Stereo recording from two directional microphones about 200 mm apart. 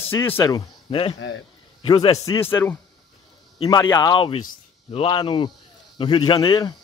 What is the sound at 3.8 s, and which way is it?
Speech, 15° left (ahead or behind).